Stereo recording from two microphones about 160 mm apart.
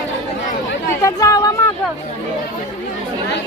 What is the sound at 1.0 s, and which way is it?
Speech, 20° left (ahead or behind).